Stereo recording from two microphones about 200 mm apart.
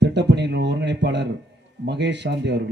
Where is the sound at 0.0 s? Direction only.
60° right (ahead or behind).